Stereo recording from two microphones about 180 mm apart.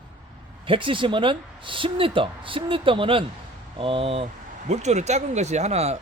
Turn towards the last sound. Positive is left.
turn(degrees=-35)  # may be behind; listen again after turning